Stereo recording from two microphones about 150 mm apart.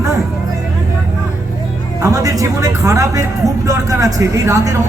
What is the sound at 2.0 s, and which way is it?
A man's voice, 20° right (ahead or behind).